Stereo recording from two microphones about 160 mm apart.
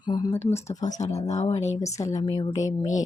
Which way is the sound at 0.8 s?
45° left (ahead or behind).